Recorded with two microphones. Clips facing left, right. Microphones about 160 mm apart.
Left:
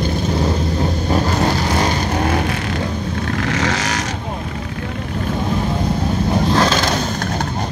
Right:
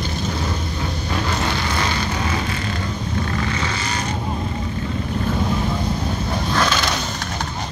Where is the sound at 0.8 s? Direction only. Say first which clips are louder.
Left 6 dB; 40° left (ahead or behind).